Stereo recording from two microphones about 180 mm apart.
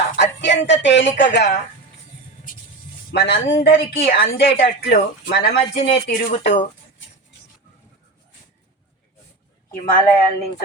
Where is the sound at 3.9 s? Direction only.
35° left (ahead or behind).